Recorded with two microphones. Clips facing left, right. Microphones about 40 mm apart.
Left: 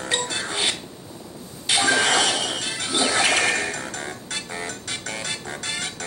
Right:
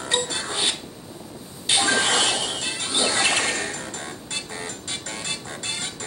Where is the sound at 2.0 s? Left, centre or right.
Centre.